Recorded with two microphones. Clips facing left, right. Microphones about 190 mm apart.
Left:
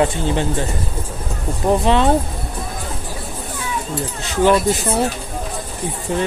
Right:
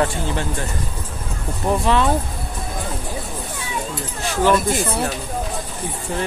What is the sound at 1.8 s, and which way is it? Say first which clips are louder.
Speech: left 2 dB; 25° left (ahead or behind).